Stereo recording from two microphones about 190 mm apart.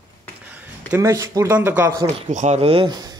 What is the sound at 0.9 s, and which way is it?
Speech, 15° right (ahead or behind).